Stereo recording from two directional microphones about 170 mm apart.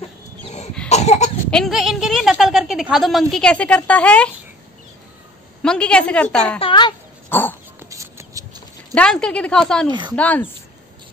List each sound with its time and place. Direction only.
0.8 s cough: 40° left (ahead or behind)
1.5 s speech: centre (ahead or behind)
5.6 s speech: 5° left (ahead or behind)
6.6 s speech: 25° left (ahead or behind)
7.2 s dog: 10° left (ahead or behind)
7.9 s a sound: 20° right (ahead or behind)
8.9 s speech: 5° left (ahead or behind)
9.8 s speech: 25° right (ahead or behind)
10.1 s speech: 10° left (ahead or behind)